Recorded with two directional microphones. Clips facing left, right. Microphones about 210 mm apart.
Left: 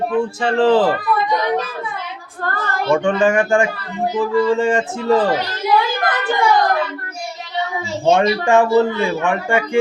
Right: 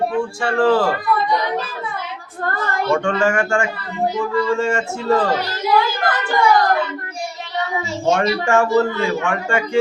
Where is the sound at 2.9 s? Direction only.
15° left (ahead or behind).